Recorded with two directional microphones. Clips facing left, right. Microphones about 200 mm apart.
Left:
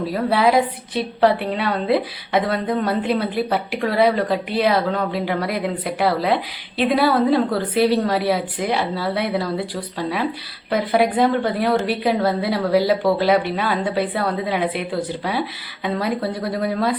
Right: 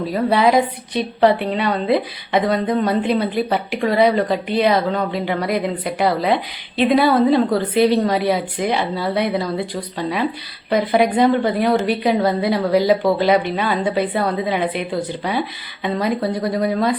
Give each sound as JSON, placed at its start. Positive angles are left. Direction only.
{"t": 0.0, "sound": "a woman's voice", "side_deg": 5}